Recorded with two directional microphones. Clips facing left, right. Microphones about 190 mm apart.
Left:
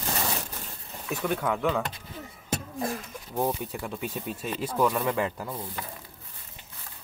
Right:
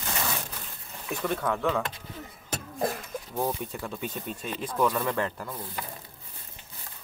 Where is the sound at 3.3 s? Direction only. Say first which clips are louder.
Left 2 dB; 5° left (ahead or behind).